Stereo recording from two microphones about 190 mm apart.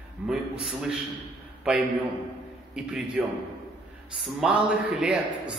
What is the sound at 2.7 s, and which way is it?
Speech, 5° right (ahead or behind).